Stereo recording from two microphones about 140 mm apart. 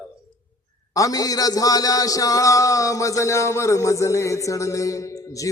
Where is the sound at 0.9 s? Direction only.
25° left (ahead or behind).